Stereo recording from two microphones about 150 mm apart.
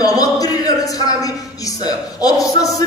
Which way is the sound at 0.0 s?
25° left (ahead or behind).